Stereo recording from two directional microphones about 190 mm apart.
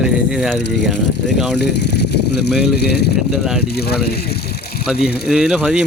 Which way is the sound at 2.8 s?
60° left (ahead or behind).